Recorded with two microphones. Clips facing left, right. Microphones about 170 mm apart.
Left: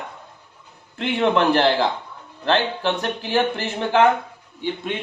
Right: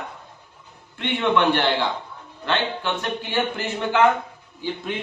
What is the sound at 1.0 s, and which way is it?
A man's voice, 35° left (ahead or behind).